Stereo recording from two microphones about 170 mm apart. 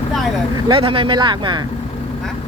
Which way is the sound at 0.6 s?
30° right (ahead or behind).